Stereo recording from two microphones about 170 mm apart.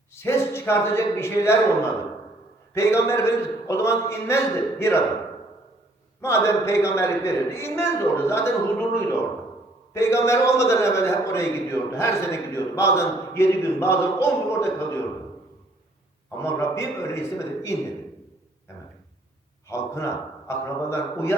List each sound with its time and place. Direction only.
0.1 s a man's voice: 15° left (ahead or behind)
6.2 s a man's voice: 15° left (ahead or behind)
16.4 s a man's voice: 15° left (ahead or behind)
19.6 s a man's voice: 15° left (ahead or behind)